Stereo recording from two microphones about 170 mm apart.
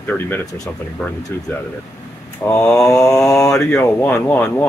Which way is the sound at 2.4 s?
20° left (ahead or behind).